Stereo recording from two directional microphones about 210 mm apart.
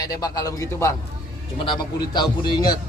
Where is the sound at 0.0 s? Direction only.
20° left (ahead or behind).